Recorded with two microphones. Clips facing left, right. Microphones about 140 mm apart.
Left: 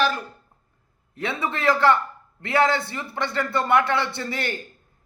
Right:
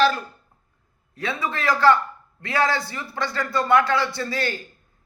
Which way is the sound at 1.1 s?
20° left (ahead or behind).